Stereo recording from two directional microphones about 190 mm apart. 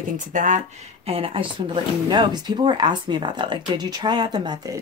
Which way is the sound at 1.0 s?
30° right (ahead or behind).